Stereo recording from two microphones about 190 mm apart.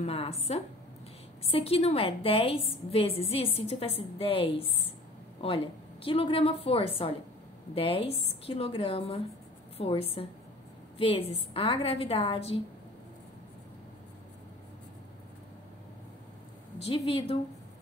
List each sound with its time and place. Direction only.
0.0 s a woman's voice: 30° left (ahead or behind)
16.8 s a woman's voice: 30° left (ahead or behind)